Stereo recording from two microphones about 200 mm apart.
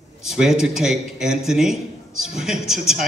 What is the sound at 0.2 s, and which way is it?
A man's voice, centre (ahead or behind).